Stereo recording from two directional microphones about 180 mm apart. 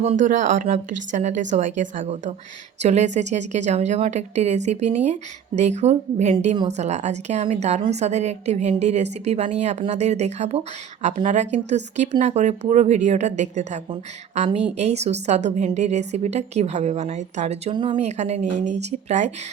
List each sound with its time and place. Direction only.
0.0 s a woman's voice: 40° right (ahead or behind)